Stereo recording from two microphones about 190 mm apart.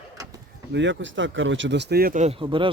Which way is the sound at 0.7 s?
70° right (ahead or behind).